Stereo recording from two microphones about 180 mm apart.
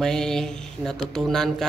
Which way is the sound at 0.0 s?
5° left (ahead or behind).